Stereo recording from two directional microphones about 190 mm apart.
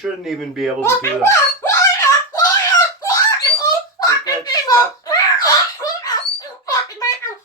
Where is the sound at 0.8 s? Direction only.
15° left (ahead or behind).